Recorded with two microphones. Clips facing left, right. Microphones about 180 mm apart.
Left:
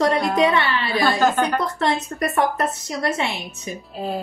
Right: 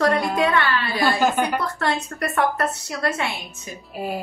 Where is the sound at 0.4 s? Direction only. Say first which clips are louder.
Left 2 dB; 20° left (ahead or behind).